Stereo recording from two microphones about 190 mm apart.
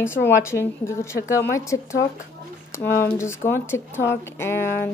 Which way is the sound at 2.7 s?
10° left (ahead or behind).